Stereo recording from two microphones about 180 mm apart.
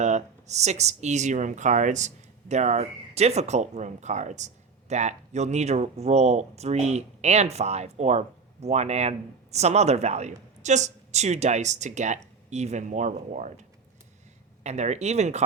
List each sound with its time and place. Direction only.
0.0 s speech: 40° right (ahead or behind)